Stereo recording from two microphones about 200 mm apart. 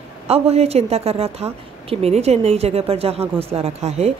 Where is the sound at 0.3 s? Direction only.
30° right (ahead or behind).